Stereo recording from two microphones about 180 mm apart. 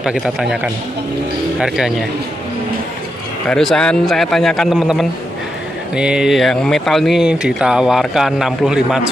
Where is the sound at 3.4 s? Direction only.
5° left (ahead or behind).